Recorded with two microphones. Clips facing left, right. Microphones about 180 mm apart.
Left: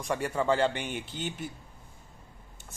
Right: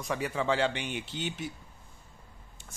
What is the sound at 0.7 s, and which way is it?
Speech, 50° left (ahead or behind).